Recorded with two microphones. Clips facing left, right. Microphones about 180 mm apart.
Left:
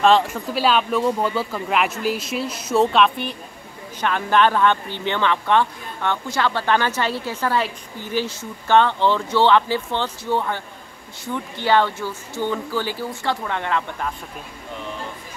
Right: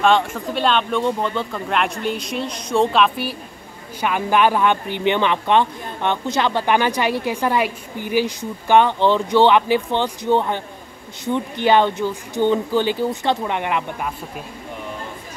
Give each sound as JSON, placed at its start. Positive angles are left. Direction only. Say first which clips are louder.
{"t": 0.0, "sound": "a man's voice", "louder": "left 1 dB", "side_deg": 0}